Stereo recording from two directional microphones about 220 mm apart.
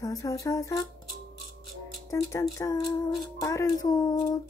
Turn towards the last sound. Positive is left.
turn(degrees=15)  # may be behind; listen again after turning